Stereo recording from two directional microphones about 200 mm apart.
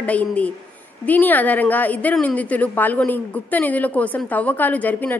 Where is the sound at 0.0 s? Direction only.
5° left (ahead or behind).